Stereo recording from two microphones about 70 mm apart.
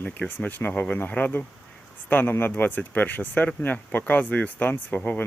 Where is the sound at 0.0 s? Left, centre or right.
Left.